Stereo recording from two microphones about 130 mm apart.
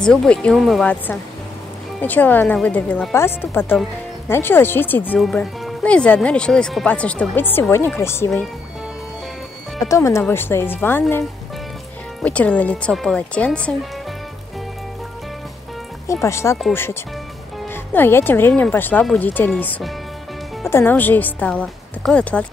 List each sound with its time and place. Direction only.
0.0 s speech: 5° left (ahead or behind)
2.0 s speech: 15° left (ahead or behind)
9.8 s speech: 25° left (ahead or behind); by 13.7 s 10° left (ahead or behind)
16.1 s speech: 20° left (ahead or behind)
17.9 s speech: 15° left (ahead or behind)